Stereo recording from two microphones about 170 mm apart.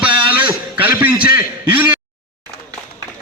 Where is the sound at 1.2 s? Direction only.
10° right (ahead or behind).